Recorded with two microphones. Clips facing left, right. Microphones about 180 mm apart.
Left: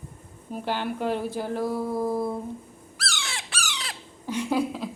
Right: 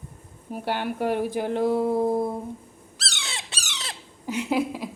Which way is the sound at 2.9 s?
20° right (ahead or behind).